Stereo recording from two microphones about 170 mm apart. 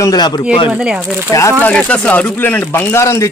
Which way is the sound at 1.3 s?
20° left (ahead or behind).